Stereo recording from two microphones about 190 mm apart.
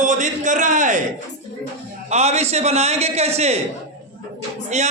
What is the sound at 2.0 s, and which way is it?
A man's voice, 35° right (ahead or behind).